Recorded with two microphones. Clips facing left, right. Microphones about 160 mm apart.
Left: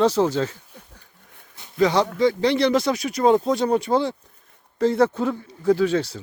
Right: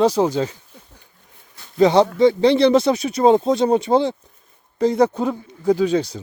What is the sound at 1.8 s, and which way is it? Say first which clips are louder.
Speech: right 5 dB; 25° right (ahead or behind).